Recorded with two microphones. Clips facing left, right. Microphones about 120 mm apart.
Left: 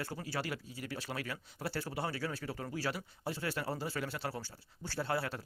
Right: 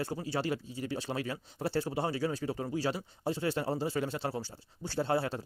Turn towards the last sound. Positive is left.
turn(degrees=-25)  # may be behind; listen again after turning